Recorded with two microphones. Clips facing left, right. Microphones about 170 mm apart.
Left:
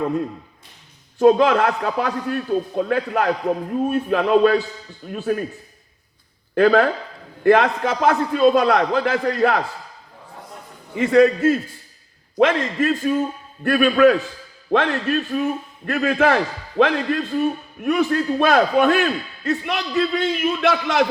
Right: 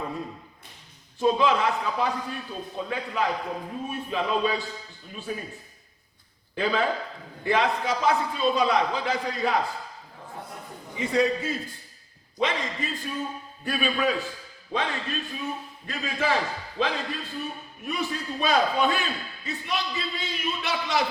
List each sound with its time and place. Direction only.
1.2 s a man's voice: 65° left (ahead or behind)
6.5 s a man's voice: 60° left (ahead or behind)
10.9 s a man's voice: 65° left (ahead or behind)